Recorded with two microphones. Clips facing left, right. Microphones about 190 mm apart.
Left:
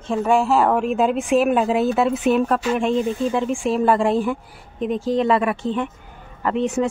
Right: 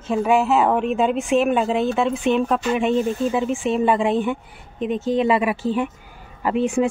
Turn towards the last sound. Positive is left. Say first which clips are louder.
# right 1 dB
turn(degrees=-10)  # may be behind; listen again after turning